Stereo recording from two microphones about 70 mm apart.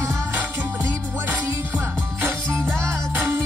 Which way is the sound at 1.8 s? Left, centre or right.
Right.